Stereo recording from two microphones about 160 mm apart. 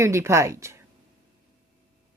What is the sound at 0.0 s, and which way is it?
Speech, 15° right (ahead or behind).